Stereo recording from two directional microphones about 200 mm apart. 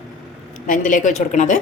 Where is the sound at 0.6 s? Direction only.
40° left (ahead or behind).